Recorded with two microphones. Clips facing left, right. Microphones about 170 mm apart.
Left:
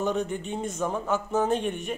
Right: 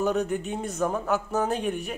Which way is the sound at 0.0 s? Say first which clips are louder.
Right 2 dB; 5° right (ahead or behind).